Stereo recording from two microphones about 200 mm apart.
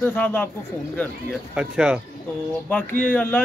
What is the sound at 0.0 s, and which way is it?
Speech, 10° left (ahead or behind).